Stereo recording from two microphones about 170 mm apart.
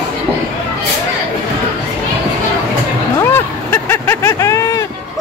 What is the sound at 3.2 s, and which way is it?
Vehicle, 15° left (ahead or behind).